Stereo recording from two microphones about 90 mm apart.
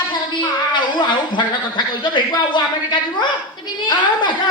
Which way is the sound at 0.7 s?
55° left (ahead or behind).